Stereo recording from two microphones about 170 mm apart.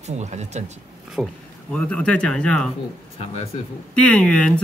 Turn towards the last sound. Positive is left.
turn(degrees=5)  # may be behind; listen again after turning